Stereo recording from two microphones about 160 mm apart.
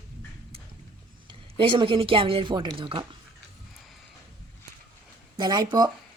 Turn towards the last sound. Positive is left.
turn(degrees=-25)  # may be behind; listen again after turning